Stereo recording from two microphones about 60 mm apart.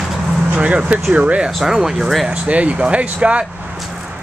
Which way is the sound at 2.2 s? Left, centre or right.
Right.